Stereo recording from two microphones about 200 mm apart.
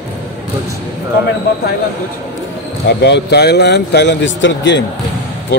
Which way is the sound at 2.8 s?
60° left (ahead or behind).